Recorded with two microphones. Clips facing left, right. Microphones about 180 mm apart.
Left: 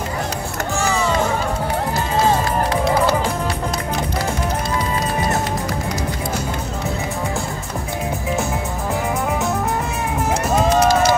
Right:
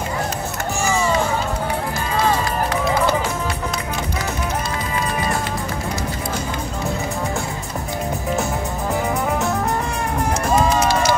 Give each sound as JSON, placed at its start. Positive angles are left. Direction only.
{"t": 10.8, "sound": "run", "side_deg": 55}